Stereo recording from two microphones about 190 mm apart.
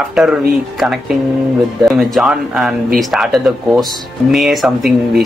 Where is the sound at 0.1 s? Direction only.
Centre (ahead or behind).